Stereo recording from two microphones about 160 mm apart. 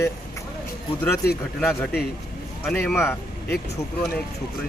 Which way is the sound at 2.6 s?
Centre (ahead or behind).